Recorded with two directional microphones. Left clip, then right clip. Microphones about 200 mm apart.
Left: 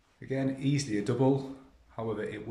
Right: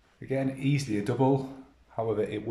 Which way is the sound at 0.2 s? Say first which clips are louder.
Right 2 dB; centre (ahead or behind).